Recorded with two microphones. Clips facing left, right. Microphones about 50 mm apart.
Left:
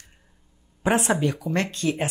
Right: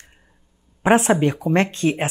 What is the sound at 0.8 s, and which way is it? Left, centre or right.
Speech, right.